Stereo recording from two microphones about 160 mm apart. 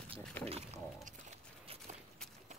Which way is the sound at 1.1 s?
45° right (ahead or behind).